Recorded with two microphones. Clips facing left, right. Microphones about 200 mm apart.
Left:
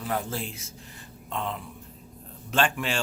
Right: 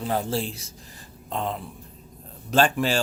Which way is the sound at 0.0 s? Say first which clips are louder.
Right 5 dB; 30° right (ahead or behind).